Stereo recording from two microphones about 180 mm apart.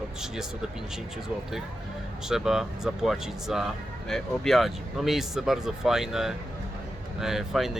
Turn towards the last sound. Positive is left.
turn(degrees=0)  # may be behind; listen again after turning